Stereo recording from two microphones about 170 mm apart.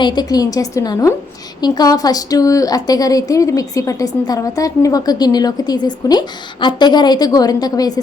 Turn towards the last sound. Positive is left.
turn(degrees=20)  # may be behind; listen again after turning